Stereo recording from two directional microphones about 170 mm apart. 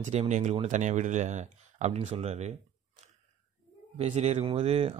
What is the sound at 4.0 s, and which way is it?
Speech, 40° right (ahead or behind).